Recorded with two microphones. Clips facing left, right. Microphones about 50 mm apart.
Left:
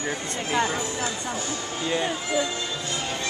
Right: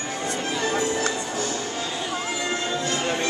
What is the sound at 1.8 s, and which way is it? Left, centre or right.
Music, left.